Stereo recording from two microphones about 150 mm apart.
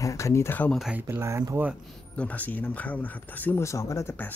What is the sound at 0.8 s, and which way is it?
Speech, 10° right (ahead or behind).